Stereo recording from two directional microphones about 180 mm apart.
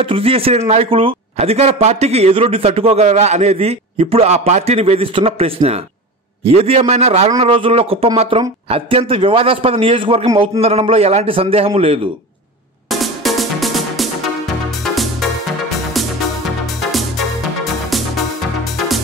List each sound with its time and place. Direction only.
0.0 s a man's voice: 30° right (ahead or behind)
12.9 s music: centre (ahead or behind)